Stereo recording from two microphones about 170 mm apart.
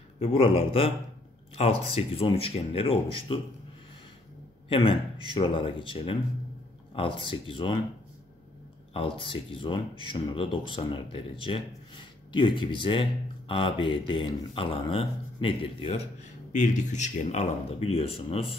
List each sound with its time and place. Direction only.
0.2 s speech: 35° left (ahead or behind)
4.6 s a man's voice: 30° left (ahead or behind)
8.9 s speech: 30° left (ahead or behind)
16.5 s speech: 45° left (ahead or behind)